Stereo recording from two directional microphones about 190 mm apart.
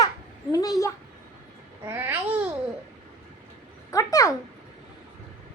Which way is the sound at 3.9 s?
15° left (ahead or behind).